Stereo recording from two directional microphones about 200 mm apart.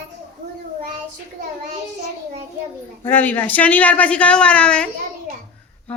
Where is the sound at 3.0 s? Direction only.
10° left (ahead or behind).